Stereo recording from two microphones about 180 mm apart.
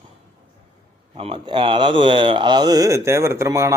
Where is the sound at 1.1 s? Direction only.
35° right (ahead or behind).